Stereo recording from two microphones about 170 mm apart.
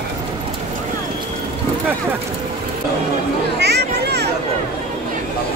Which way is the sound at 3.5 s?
80° right.